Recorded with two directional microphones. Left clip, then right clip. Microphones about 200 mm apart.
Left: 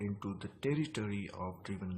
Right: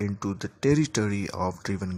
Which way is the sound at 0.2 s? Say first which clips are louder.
Right 12 dB; 45° right (ahead or behind).